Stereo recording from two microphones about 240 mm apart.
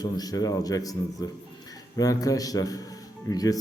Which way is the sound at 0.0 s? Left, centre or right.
Centre.